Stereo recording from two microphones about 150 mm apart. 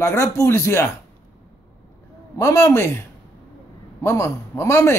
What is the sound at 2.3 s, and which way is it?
Speech, 20° left (ahead or behind).